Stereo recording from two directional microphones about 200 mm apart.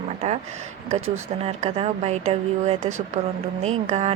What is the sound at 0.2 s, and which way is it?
Speech, 35° right (ahead or behind).